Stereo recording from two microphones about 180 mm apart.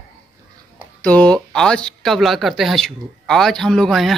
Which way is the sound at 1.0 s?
5° left (ahead or behind).